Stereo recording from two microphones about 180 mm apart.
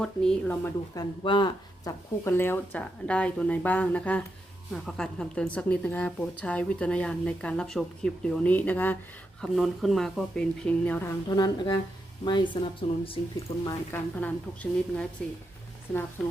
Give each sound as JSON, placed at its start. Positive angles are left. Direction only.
{"t": 0.0, "sound": "a woman's voice", "side_deg": 5}
{"t": 0.9, "sound": "a woman's voice", "side_deg": 25}
{"t": 13.3, "sound": "a woman's voice", "side_deg": 15}